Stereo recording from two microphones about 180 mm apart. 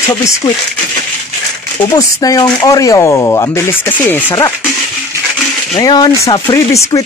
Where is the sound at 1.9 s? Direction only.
20° left (ahead or behind).